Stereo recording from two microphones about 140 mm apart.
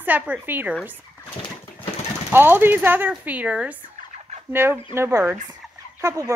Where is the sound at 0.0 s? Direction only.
10° right (ahead or behind).